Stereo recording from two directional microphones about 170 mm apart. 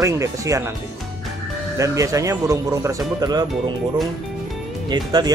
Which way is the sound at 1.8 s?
20° right (ahead or behind).